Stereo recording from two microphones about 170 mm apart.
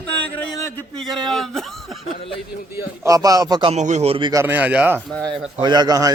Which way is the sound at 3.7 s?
45° right (ahead or behind).